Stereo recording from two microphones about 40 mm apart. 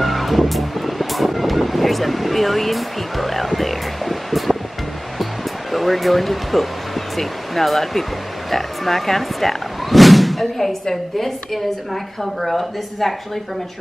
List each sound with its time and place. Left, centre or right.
0.0 s music: centre
7.2 s speech: centre